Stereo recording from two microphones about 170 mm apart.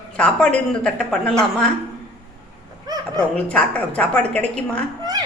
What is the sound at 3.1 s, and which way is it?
A woman's voice, 5° left (ahead or behind).